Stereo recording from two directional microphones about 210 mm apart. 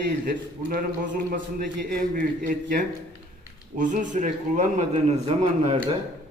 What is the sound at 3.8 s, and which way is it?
A man's voice, 40° right (ahead or behind).